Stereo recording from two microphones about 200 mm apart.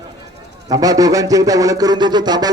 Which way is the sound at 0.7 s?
20° right (ahead or behind).